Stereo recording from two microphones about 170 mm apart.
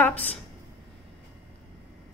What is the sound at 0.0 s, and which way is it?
Speech, 10° left (ahead or behind).